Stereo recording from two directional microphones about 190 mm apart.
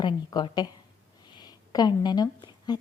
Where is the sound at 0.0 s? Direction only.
25° left (ahead or behind).